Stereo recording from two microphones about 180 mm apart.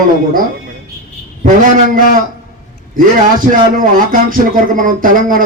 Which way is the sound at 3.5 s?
50° right (ahead or behind).